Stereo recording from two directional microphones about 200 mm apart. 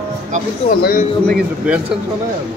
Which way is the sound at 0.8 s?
45° left (ahead or behind).